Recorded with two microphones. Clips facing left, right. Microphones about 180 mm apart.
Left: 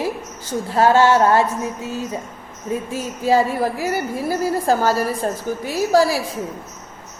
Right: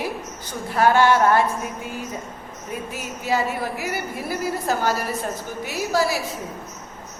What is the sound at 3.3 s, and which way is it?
A woman's voice, 35° left (ahead or behind).